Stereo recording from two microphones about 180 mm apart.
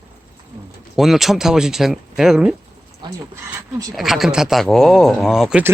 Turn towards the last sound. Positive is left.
turn(degrees=-5)  # may be behind; listen again after turning